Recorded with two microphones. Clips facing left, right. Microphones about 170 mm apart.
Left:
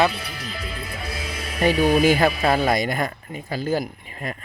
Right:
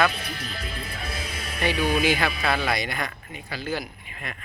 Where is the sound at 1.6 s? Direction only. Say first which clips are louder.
Left 6 dB; 35° left (ahead or behind).